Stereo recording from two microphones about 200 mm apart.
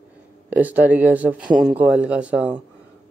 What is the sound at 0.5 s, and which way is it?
Speech, 10° right (ahead or behind).